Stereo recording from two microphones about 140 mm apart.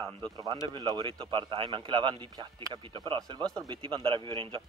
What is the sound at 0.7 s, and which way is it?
Speech, 30° right (ahead or behind).